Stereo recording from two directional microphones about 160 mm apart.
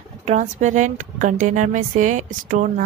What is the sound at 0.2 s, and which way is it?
A woman's voice, 45° right (ahead or behind).